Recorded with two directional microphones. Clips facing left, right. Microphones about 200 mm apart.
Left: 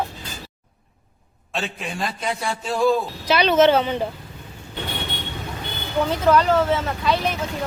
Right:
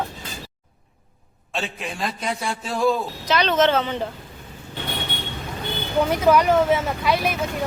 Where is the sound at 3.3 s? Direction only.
10° left (ahead or behind).